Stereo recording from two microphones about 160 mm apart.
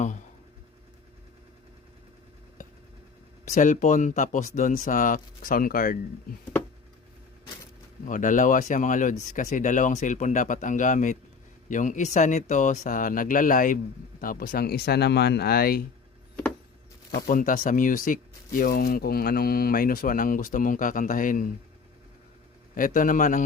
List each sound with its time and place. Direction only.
3.5 s speech: 50° left (ahead or behind)
8.0 s speech: 55° left (ahead or behind); by 15.8 s 70° left (ahead or behind)
17.2 s speech: 60° left (ahead or behind)
22.7 s speech: 55° left (ahead or behind)